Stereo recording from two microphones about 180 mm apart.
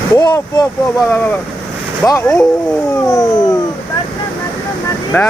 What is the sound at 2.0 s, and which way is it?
Speech, 15° left (ahead or behind).